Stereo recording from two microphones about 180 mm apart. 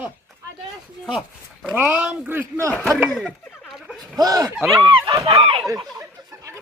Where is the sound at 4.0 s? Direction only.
20° right (ahead or behind).